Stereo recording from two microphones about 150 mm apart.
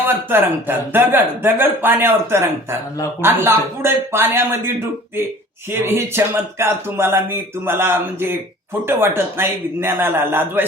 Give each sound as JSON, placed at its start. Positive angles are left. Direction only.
{"t": 0.3, "sound": "speech", "side_deg": -15}